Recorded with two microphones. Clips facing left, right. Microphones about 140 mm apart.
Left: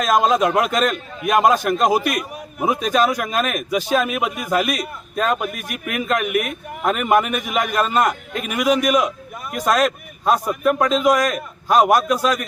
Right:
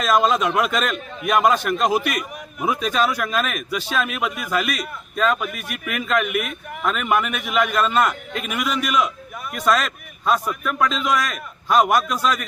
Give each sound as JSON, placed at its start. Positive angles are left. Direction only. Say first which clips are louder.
{"t": 0.0, "sound": "a man's voice", "louder": "left 2 dB", "side_deg": 45}